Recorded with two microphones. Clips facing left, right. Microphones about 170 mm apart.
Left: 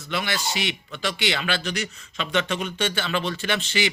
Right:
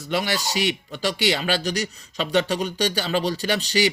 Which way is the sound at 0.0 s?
40° right (ahead or behind).